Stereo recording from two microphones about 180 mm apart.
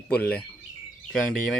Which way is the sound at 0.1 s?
10° left (ahead or behind).